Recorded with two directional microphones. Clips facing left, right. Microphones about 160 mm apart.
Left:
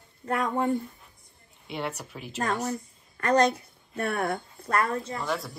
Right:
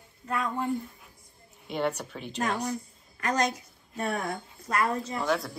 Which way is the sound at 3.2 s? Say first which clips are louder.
Left 6 dB; 55° left (ahead or behind).